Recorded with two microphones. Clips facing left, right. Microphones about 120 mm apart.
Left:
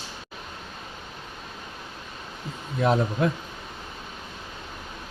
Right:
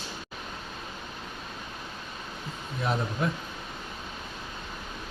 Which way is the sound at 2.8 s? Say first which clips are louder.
Left 7 dB; 90° left.